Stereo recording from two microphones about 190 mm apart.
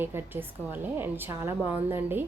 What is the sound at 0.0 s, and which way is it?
Speech, 10° right (ahead or behind).